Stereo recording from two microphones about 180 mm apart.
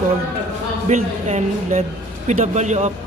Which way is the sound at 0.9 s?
40° right (ahead or behind).